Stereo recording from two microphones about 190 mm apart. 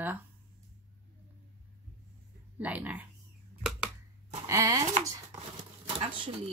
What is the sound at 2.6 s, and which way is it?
Speech, 10° right (ahead or behind).